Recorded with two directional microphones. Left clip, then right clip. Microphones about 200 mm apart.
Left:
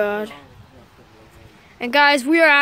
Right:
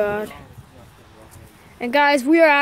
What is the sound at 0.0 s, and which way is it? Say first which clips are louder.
Speech: even; centre (ahead or behind).